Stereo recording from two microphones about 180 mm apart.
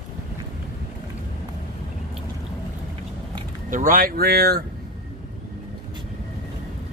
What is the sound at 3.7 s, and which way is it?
Speech, 50° right (ahead or behind).